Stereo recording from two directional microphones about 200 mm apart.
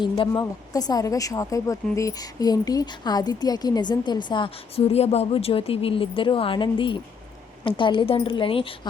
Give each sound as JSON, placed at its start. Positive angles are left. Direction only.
{"t": 0.0, "sound": "speech", "side_deg": 20}